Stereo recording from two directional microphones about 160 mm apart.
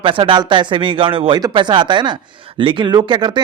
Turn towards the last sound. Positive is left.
turn(degrees=-30)  # may be behind; listen again after turning